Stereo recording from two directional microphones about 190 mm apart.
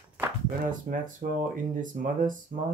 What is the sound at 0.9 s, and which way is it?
Speech, 45° right (ahead or behind).